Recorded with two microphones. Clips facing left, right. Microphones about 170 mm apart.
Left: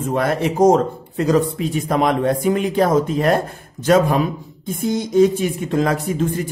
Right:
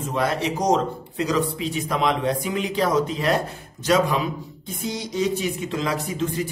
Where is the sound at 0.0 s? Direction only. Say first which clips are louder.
Left 5 dB; 50° left (ahead or behind).